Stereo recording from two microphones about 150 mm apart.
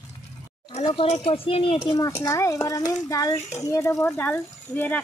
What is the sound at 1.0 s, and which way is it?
Speech, 40° left (ahead or behind).